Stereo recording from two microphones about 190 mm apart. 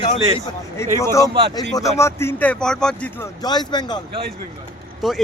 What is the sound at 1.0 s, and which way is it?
Speech, 15° left (ahead or behind).